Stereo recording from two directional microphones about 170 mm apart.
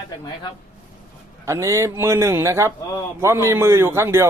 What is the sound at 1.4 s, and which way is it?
A man's voice, 15° right (ahead or behind).